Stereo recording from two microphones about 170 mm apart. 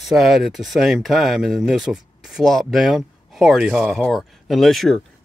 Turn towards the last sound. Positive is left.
turn(degrees=0)  # may be behind; listen again after turning